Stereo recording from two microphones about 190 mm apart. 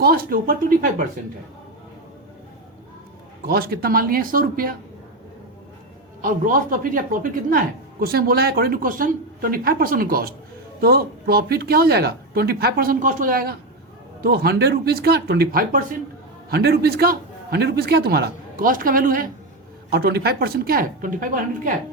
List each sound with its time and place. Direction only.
0.0 s speech: 50° right (ahead or behind)
3.4 s speech: 55° right (ahead or behind)
6.2 s a man's voice: 45° right (ahead or behind)